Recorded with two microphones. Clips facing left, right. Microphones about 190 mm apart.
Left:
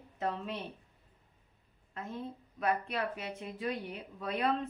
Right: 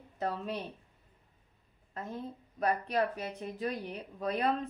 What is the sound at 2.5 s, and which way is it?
Speech, 40° right (ahead or behind).